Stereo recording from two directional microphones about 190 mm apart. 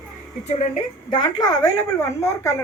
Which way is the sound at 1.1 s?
25° left (ahead or behind).